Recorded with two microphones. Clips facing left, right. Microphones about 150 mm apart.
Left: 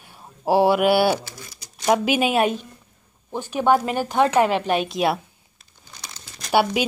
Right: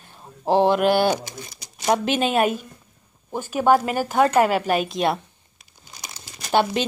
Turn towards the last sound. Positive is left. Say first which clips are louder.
# left 1 dB
turn(degrees=10)  # may be behind; listen again after turning